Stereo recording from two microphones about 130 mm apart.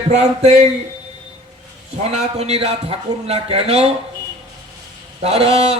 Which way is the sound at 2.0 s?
55° right (ahead or behind).